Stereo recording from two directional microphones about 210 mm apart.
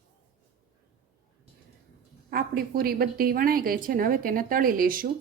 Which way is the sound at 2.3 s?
45° right (ahead or behind).